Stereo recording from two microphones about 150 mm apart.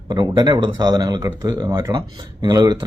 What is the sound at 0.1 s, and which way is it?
Speech, 30° right (ahead or behind).